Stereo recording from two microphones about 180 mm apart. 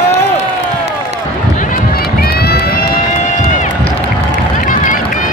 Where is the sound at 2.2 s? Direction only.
60° left (ahead or behind).